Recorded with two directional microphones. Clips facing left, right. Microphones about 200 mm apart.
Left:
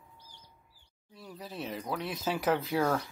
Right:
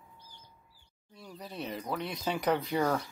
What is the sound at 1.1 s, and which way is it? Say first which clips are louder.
Speech: left 1 dB; centre (ahead or behind).